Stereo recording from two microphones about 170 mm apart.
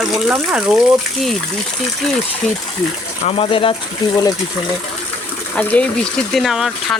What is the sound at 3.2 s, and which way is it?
Speech, 35° left (ahead or behind).